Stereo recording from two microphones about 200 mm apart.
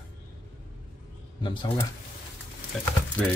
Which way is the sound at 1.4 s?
25° left (ahead or behind).